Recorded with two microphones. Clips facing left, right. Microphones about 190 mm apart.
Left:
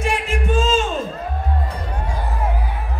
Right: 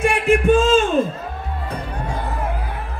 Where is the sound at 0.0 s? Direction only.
55° right (ahead or behind).